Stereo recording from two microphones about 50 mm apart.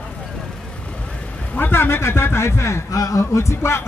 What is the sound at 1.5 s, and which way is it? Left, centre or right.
A man's voice, left.